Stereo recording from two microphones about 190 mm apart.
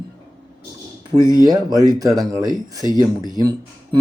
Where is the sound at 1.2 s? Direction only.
20° left (ahead or behind).